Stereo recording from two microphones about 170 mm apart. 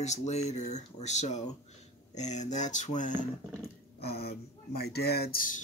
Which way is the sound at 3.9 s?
70° left (ahead or behind).